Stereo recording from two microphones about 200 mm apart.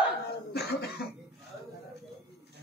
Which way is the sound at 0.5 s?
55° left (ahead or behind).